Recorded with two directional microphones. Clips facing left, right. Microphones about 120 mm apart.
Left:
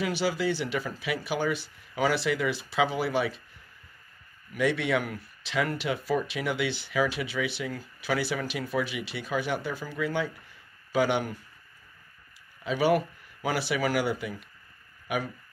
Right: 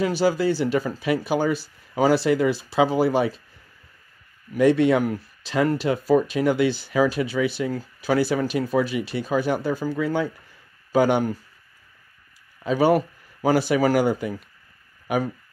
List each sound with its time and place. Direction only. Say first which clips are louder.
0.0 s speech: right 7 dB; 40° right (ahead or behind)
4.6 s speech: right 9 dB; 40° right (ahead or behind)
12.6 s speech: right 5 dB; 40° right (ahead or behind)